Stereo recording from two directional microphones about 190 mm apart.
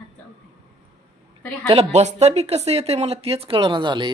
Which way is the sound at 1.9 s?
35° right (ahead or behind).